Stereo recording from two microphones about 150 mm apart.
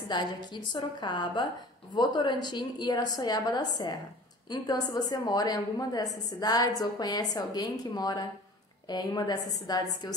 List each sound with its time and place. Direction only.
0.1 s a woman's voice: 30° left (ahead or behind)